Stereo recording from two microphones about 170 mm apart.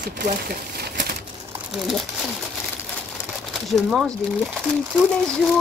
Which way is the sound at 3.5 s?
Centre (ahead or behind).